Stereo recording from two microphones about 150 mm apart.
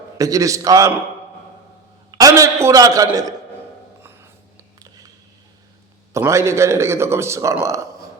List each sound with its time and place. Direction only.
0.2 s a man's voice: 20° right (ahead or behind)
2.0 s a man's voice: 25° right (ahead or behind)
4.0 s whispering: 15° right (ahead or behind)
4.8 s a sound: 25° right (ahead or behind)
6.1 s a man's voice: 20° right (ahead or behind)